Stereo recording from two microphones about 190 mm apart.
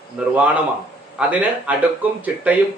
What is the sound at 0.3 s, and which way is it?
A man's voice, 10° right (ahead or behind).